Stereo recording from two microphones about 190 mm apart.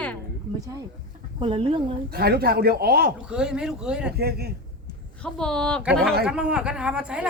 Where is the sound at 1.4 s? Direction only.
30° right (ahead or behind).